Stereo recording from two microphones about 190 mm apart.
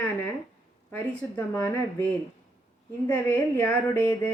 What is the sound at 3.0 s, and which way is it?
A woman's voice, 10° left (ahead or behind).